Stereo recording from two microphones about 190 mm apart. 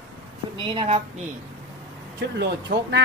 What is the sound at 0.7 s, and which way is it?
Speech, 25° right (ahead or behind).